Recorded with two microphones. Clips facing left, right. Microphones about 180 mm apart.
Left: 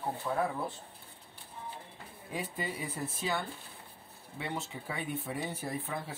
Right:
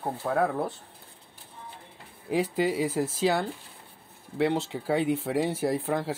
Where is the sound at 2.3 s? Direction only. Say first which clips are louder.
Right 12 dB; 90° right.